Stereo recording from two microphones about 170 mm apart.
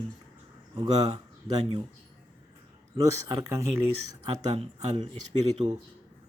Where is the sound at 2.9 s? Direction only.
20° right (ahead or behind).